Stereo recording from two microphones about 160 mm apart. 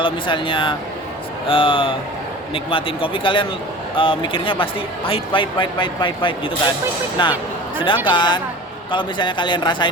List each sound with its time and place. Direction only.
0.0 s speech: 30° left (ahead or behind)